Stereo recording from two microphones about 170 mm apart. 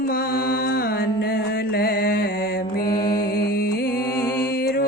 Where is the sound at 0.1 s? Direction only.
60° left (ahead or behind).